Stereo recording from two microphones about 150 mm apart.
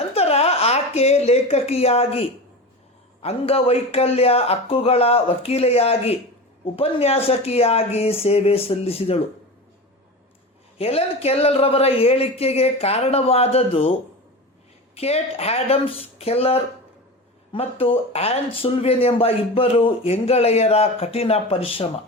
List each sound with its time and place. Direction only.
0.1 s a sound: 45° left (ahead or behind)
3.2 s a man's voice: 40° left (ahead or behind)
10.8 s speech: 40° left (ahead or behind)
14.9 s a man's voice: 45° left (ahead or behind)